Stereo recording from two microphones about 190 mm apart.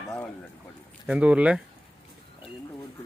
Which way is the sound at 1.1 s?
5° right (ahead or behind).